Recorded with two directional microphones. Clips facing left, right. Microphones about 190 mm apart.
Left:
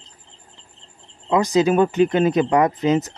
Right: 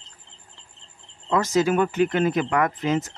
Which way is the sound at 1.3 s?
15° left (ahead or behind).